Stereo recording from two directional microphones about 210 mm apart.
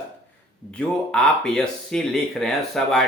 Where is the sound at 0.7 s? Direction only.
5° left (ahead or behind).